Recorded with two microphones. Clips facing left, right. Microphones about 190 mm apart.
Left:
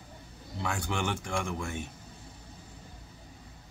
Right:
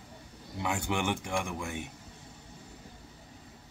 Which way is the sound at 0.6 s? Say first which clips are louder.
Right 1 dB; 20° right (ahead or behind).